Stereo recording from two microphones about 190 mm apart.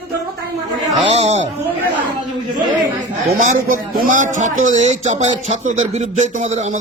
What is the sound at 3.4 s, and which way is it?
A man's voice, 45° right (ahead or behind).